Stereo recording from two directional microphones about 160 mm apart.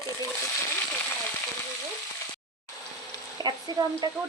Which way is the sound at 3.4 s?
25° right (ahead or behind).